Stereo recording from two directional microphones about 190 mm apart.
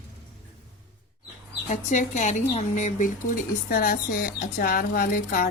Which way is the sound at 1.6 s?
40° left (ahead or behind).